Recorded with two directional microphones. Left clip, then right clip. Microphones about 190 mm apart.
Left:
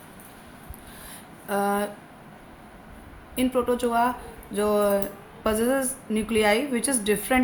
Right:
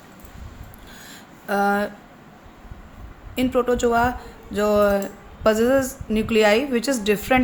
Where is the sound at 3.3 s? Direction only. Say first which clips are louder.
Right 4 dB; 40° right (ahead or behind).